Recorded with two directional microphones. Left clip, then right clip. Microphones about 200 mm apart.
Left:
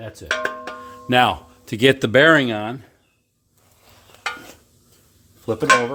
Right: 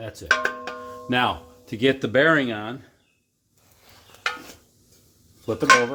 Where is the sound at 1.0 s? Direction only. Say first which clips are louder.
Left 6 dB; 60° left (ahead or behind).